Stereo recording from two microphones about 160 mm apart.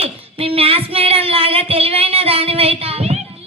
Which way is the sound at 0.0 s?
35° right (ahead or behind).